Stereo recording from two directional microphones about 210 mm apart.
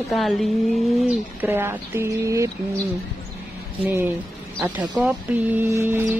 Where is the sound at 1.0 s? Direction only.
10° right (ahead or behind).